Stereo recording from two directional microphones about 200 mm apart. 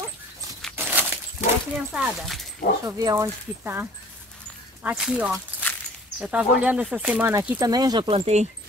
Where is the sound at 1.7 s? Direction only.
5° right (ahead or behind).